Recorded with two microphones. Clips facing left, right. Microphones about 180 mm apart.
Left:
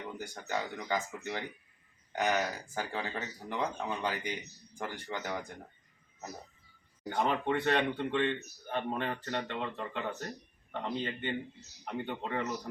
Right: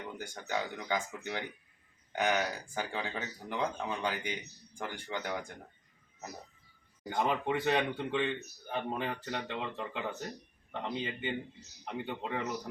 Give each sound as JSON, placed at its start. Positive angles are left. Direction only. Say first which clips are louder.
{"t": 0.2, "sound": "speech", "louder": "right 1 dB", "side_deg": 0}
{"t": 7.2, "sound": "speech", "louder": "left 1 dB", "side_deg": -5}